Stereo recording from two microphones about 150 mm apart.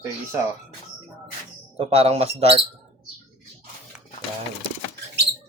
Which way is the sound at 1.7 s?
45° right (ahead or behind).